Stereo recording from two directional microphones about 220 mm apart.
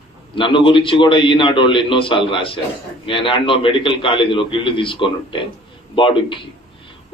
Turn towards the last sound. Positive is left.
turn(degrees=20)  # may be behind; listen again after turning